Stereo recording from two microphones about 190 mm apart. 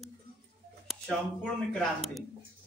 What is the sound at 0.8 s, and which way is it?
Speech, centre (ahead or behind).